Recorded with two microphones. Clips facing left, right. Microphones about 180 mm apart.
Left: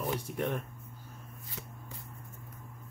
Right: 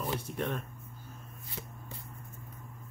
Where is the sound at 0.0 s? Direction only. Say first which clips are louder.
Left 1 dB; 15° left (ahead or behind).